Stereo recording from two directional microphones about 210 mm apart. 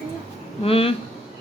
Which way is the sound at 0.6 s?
25° left (ahead or behind).